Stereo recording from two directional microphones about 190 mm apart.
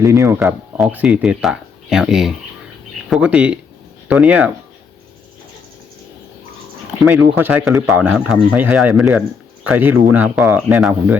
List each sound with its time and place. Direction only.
0.0 s speech: 15° right (ahead or behind)
0.8 s speech: 5° right (ahead or behind)
7.0 s speech: 5° right (ahead or behind)